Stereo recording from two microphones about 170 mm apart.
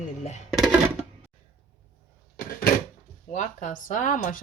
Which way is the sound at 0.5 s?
Centre (ahead or behind).